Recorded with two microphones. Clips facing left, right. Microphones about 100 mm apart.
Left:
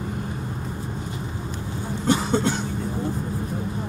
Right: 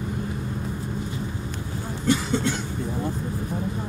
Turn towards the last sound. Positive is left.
turn(degrees=35)  # may be behind; listen again after turning